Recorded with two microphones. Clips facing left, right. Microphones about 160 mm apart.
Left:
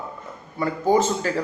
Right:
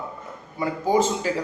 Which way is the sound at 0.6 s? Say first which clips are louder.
Left 1 dB; 15° right (ahead or behind).